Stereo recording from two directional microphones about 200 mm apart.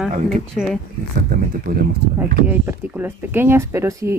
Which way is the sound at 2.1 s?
10° right (ahead or behind).